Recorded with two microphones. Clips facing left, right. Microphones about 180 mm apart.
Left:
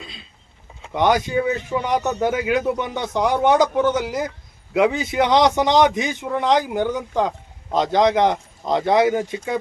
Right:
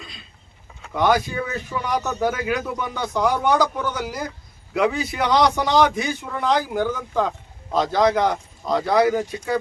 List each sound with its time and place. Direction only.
0.8 s a man's voice: 20° left (ahead or behind)